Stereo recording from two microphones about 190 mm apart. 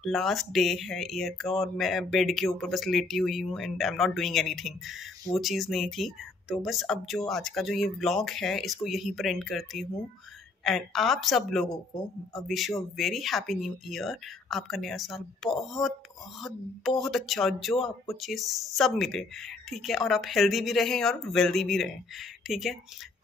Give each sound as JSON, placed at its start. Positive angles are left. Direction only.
{"t": 0.0, "sound": "speech", "side_deg": 0}